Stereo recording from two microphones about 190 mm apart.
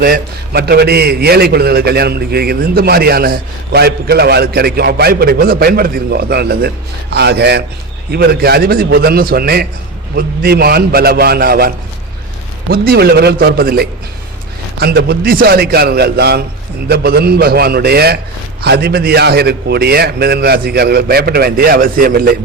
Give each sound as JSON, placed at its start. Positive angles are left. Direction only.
{"t": 0.0, "sound": "a man's voice", "side_deg": -55}
{"t": 12.7, "sound": "a man's voice", "side_deg": -55}